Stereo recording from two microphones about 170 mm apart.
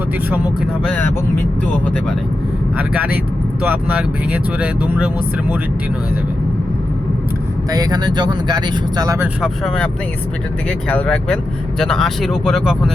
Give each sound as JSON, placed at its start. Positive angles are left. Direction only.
{"t": 0.3, "sound": "speech", "side_deg": -10}
{"t": 2.7, "sound": "speech", "side_deg": -10}
{"t": 7.7, "sound": "speech", "side_deg": -20}
{"t": 9.4, "sound": "speech", "side_deg": 5}